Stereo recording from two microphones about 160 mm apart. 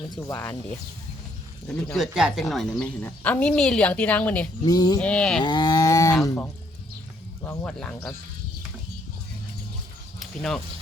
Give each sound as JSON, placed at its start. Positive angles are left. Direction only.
{"t": 0.2, "sound": "a woman's voice", "side_deg": 15}
{"t": 2.0, "sound": "a woman's voice", "side_deg": -5}
{"t": 4.6, "sound": "a sound", "side_deg": 25}
{"t": 4.9, "sound": "speech", "side_deg": 5}
{"t": 5.4, "sound": "cattle", "side_deg": 30}
{"t": 6.2, "sound": "a woman's voice", "side_deg": 15}
{"t": 10.2, "sound": "a sound", "side_deg": 5}